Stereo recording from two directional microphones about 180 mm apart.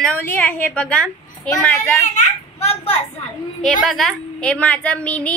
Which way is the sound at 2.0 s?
40° left (ahead or behind).